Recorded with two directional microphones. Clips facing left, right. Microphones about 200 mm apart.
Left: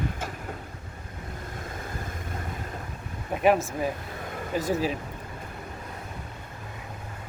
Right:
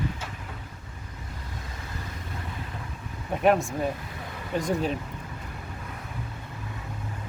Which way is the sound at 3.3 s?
Centre (ahead or behind).